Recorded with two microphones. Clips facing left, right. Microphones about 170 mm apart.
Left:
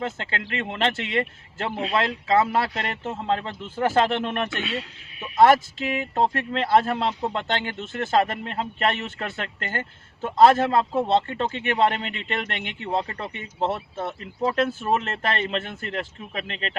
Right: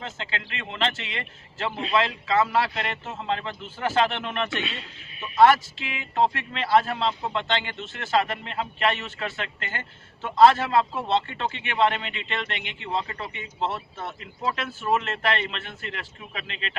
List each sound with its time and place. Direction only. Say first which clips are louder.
0.0 s speech: left 5 dB; 50° left (ahead or behind)
4.6 s speech: left 5 dB; 5° left (ahead or behind)
5.4 s speech: left 1 dB; 45° left (ahead or behind)
14.9 s a man's voice: right 2 dB; 40° left (ahead or behind)